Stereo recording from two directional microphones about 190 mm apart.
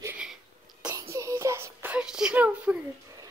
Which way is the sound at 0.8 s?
15° right (ahead or behind).